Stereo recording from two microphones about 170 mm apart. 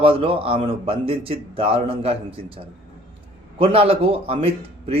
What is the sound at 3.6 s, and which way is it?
Speech, 35° right (ahead or behind).